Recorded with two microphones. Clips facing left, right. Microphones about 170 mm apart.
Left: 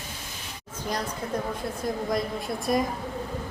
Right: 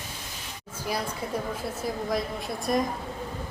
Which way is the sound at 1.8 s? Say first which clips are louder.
Left 2 dB; centre (ahead or behind).